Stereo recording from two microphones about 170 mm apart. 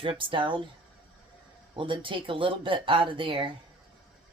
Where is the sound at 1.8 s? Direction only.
30° right (ahead or behind).